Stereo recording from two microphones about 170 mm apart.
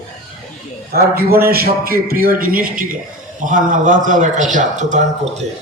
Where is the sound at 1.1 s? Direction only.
60° right (ahead or behind); by 4.9 s 45° right (ahead or behind).